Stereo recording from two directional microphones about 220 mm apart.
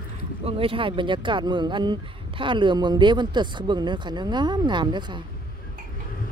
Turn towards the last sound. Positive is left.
turn(degrees=-20)  # may be behind; listen again after turning